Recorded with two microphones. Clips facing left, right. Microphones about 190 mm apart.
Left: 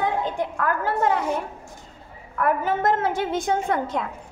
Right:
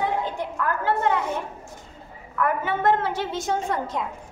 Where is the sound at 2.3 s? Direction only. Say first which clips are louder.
Left 2 dB; 40° left (ahead or behind); by 4.0 s 55° left (ahead or behind).